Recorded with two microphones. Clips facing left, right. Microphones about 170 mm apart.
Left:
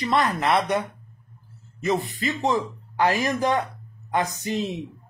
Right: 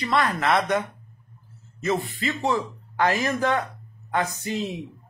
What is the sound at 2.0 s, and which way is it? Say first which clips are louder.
Speech: left 1 dB; 40° left (ahead or behind).